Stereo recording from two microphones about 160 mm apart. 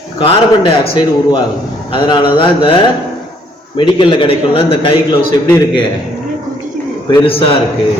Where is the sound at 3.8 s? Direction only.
30° left (ahead or behind).